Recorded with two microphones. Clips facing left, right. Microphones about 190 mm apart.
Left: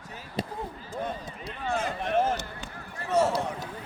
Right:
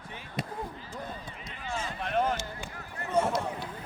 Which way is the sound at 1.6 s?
60° left (ahead or behind).